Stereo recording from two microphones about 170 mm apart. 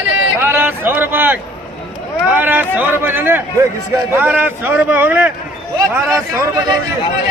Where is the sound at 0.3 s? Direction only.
15° right (ahead or behind).